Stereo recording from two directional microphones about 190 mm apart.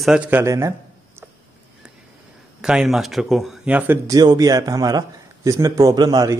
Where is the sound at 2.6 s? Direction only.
5° right (ahead or behind).